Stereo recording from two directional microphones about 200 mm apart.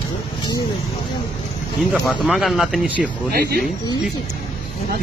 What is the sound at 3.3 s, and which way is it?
Speech, 50° right (ahead or behind).